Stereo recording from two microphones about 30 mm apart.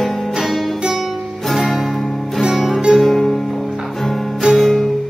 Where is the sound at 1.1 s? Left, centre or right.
Centre.